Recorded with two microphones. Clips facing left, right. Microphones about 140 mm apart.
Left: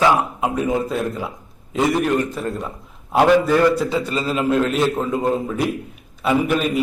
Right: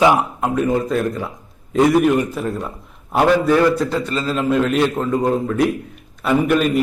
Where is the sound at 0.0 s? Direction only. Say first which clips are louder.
Right 2 dB; 15° right (ahead or behind).